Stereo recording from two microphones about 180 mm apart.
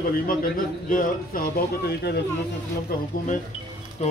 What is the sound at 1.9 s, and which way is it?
Speech, 65° left (ahead or behind).